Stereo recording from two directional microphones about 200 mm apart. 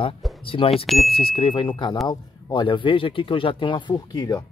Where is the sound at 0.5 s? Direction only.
25° left (ahead or behind).